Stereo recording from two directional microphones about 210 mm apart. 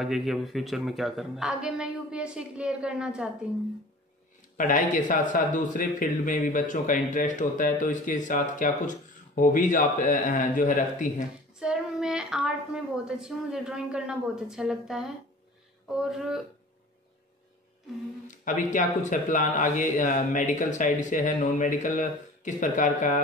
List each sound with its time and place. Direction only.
0.0 s a woman's voice: centre (ahead or behind)
4.6 s speech: 40° left (ahead or behind)
11.6 s a woman's voice: 5° right (ahead or behind)
18.3 s speech: 35° left (ahead or behind)